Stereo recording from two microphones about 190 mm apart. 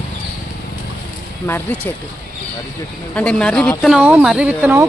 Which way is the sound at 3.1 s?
5° left (ahead or behind).